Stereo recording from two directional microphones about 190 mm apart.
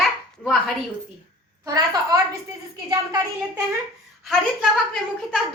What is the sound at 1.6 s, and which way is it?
Speech, 20° right (ahead or behind).